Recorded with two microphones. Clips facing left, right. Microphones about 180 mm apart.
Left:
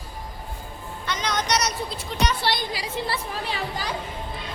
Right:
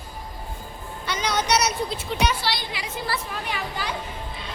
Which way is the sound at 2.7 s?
30° left (ahead or behind).